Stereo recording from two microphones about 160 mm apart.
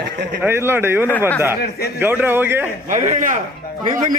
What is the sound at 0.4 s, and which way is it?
A man's voice, 15° right (ahead or behind).